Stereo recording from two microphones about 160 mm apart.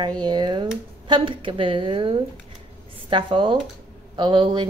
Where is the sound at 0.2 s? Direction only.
30° right (ahead or behind).